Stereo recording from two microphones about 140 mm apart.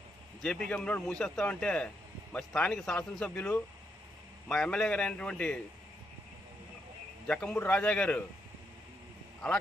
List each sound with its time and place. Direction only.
0.4 s a man's voice: 5° left (ahead or behind)
7.2 s a man's voice: 5° left (ahead or behind)